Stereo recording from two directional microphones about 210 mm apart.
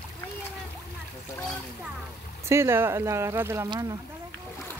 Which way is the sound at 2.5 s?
10° right (ahead or behind).